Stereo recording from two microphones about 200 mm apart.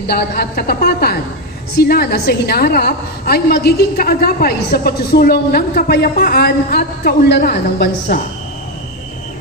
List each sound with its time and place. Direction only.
0.0 s a woman's voice: 50° left (ahead or behind)